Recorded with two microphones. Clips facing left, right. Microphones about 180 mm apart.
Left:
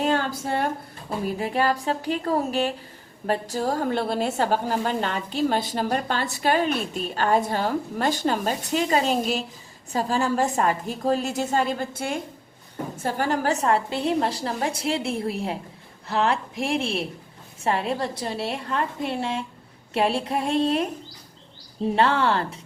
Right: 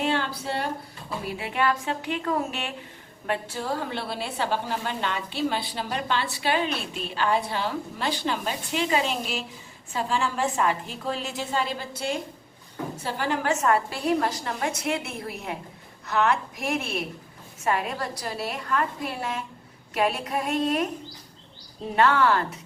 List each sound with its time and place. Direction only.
0.0 s speech: 45° left (ahead or behind)
1.2 s a woman's voice: 40° left (ahead or behind)
21.9 s a woman's voice: 30° left (ahead or behind)